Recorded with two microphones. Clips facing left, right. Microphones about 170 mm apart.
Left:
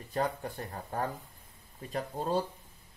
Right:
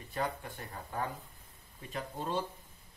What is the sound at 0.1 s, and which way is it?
Speech, 40° left (ahead or behind).